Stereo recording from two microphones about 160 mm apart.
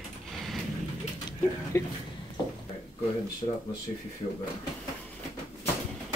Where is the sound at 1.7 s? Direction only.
20° left (ahead or behind).